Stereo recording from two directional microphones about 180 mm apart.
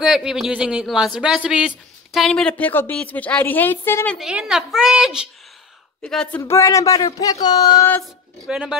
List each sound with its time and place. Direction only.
0.0 s speech: 5° right (ahead or behind)
4.2 s speech: 5° right (ahead or behind)
6.0 s speech: 5° left (ahead or behind)
8.5 s speech: 5° right (ahead or behind)